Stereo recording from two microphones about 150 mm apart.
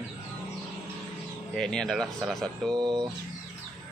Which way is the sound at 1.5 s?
5° left (ahead or behind).